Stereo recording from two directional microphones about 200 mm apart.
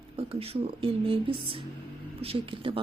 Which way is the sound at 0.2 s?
30° right (ahead or behind).